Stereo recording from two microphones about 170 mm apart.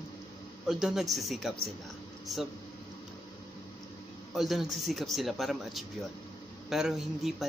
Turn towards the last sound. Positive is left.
turn(degrees=-5)  # may be behind; listen again after turning